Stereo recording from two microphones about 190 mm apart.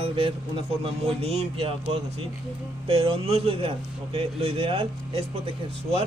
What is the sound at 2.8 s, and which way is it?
A man's voice, 30° right (ahead or behind).